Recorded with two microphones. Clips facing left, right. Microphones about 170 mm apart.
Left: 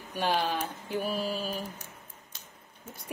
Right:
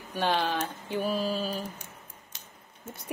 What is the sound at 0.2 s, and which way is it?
Speech, 5° left (ahead or behind).